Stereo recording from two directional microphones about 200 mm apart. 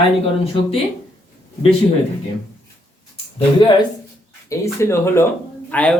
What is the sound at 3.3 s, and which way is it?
Speech, 25° left (ahead or behind).